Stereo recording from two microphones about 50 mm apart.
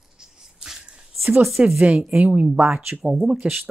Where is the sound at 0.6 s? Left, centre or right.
Centre.